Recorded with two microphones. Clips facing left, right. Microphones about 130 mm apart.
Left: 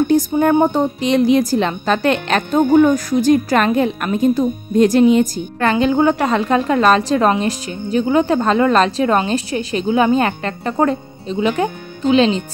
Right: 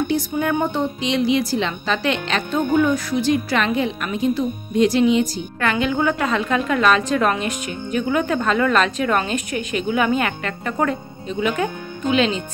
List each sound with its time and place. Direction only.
0.1 s a woman's voice: 40° left (ahead or behind)